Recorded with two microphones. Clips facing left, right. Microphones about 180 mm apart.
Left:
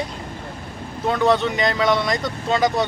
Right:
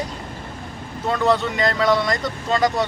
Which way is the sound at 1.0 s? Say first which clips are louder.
Left 1 dB; centre (ahead or behind).